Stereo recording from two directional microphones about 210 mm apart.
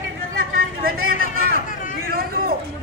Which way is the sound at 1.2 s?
40° left (ahead or behind).